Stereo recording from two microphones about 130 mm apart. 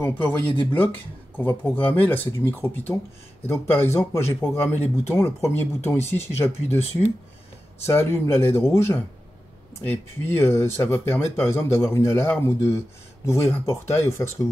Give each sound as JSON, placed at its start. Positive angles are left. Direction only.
{"t": 0.2, "sound": "speech", "side_deg": 40}
{"t": 1.4, "sound": "speech", "side_deg": 15}
{"t": 7.8, "sound": "speech", "side_deg": 20}